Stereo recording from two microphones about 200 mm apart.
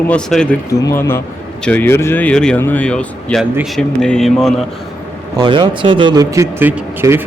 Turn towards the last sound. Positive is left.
turn(degrees=-10)  # may be behind; listen again after turning